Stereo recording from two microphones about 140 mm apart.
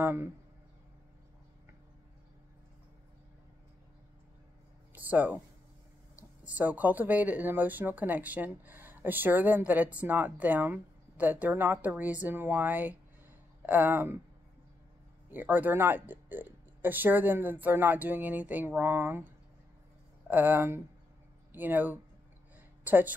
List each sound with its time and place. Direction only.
0.0 s speech: 15° right (ahead or behind)
4.9 s a sound: 10° right (ahead or behind)
6.4 s speech: 10° right (ahead or behind)
15.3 s speech: 15° right (ahead or behind)
20.2 s speech: 15° right (ahead or behind)